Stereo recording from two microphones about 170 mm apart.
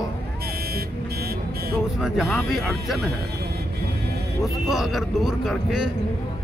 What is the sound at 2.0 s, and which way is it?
Speech, centre (ahead or behind).